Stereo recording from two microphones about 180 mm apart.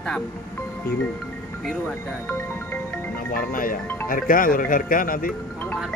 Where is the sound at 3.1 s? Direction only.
50° left (ahead or behind).